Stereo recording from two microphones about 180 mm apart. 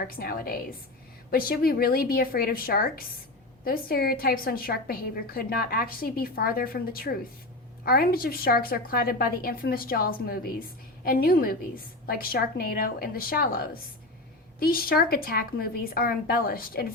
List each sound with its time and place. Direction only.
0.0 s a woman's voice: 55° left (ahead or behind)